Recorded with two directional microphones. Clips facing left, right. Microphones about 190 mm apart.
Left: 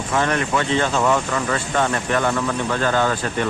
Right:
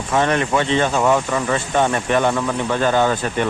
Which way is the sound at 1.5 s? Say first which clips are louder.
Right 3 dB; 20° right (ahead or behind).